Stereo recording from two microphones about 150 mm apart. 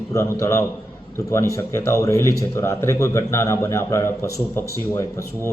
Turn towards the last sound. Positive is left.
turn(degrees=20)  # may be behind; listen again after turning